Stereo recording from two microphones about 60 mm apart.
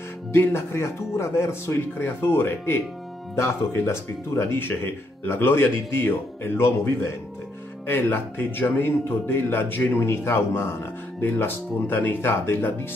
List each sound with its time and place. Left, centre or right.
0.3 s a man's voice: left
7.8 s a man's voice: left